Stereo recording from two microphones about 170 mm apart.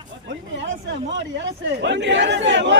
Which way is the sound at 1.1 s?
90° right.